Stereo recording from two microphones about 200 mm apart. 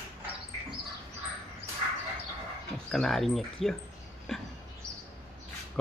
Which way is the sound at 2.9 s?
Centre (ahead or behind).